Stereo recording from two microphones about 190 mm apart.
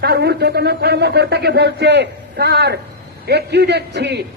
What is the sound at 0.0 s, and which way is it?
A man's voice, 60° right (ahead or behind).